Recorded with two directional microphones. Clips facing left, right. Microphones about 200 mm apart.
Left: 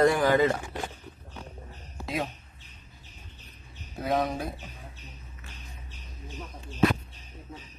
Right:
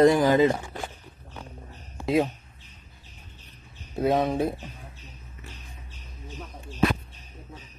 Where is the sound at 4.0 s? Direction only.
25° right (ahead or behind).